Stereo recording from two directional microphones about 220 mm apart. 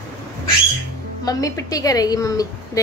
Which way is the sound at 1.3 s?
15° left (ahead or behind).